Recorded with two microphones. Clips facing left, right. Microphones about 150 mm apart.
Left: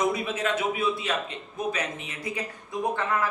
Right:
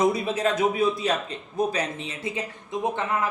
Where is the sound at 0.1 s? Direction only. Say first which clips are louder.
Right 3 dB; 35° right (ahead or behind).